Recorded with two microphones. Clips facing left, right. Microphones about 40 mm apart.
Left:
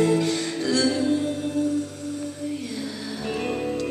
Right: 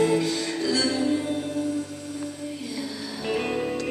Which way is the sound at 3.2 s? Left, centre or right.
Right.